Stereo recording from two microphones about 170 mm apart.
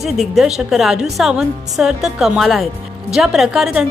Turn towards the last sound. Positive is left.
turn(degrees=0)  # may be behind; listen again after turning